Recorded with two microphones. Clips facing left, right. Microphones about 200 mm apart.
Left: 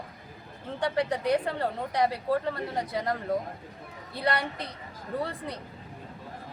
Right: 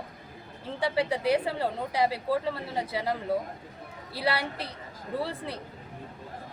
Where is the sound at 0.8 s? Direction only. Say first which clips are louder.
Even; 10° right (ahead or behind).